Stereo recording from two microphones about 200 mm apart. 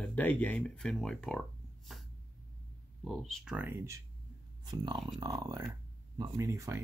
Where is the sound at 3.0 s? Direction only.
Centre (ahead or behind).